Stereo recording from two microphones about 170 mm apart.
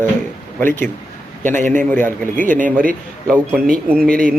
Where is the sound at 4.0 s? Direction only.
55° right (ahead or behind).